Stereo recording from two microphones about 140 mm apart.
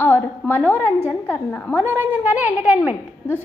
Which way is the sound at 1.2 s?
15° left (ahead or behind).